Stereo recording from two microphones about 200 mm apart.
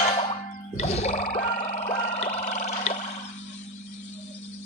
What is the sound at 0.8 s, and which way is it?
Music, 35° left (ahead or behind).